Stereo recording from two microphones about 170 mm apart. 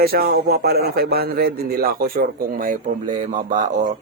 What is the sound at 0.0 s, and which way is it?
A man's voice, 65° right (ahead or behind).